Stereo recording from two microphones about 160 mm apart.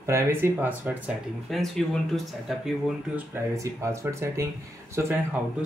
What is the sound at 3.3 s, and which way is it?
Speech, 20° right (ahead or behind).